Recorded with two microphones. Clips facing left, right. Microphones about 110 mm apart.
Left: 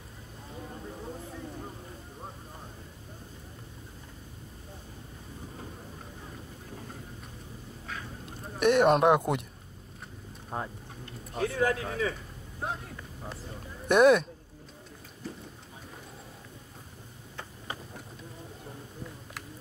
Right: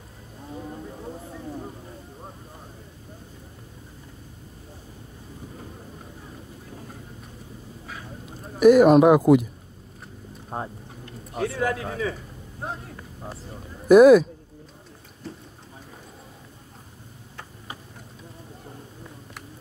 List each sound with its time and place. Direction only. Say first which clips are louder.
7.8 s a sound: even; 5° right (ahead or behind)
10.5 s vehicle: right 3 dB; 25° right (ahead or behind)
11.3 s speech: right 2 dB; 30° right (ahead or behind)
13.8 s speech: right 9 dB; 5° right (ahead or behind)